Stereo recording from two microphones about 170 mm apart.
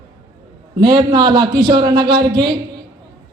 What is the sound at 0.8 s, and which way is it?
A man's voice, 25° right (ahead or behind).